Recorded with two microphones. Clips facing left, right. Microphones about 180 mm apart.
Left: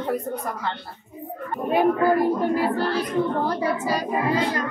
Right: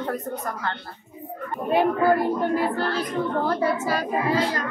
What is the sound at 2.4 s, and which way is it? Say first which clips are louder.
A man's voice: left 1 dB; 10° left (ahead or behind).